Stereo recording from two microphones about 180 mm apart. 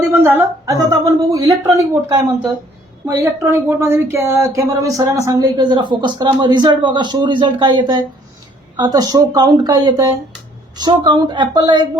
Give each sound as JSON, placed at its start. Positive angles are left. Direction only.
{"t": 0.1, "sound": "speech", "side_deg": -15}
{"t": 3.2, "sound": "speech", "side_deg": -15}